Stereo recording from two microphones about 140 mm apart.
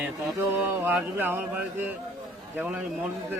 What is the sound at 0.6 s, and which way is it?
Speech, 15° right (ahead or behind).